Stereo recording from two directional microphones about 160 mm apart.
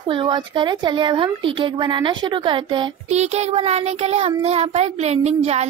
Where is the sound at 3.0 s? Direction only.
45° right (ahead or behind).